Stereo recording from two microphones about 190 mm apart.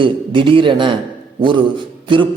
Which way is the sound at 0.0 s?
25° right (ahead or behind).